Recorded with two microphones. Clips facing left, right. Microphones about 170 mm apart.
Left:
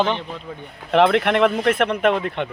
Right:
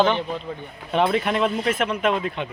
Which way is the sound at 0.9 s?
80° left.